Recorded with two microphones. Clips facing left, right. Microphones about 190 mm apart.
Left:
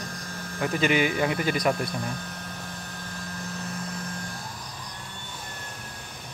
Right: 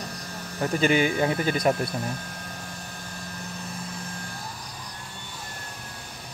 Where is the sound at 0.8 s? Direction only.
35° right (ahead or behind).